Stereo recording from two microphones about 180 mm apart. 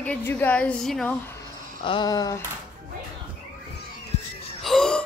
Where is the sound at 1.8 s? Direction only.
25° left (ahead or behind).